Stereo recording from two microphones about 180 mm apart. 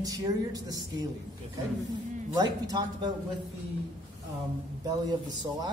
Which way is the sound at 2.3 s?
20° right (ahead or behind).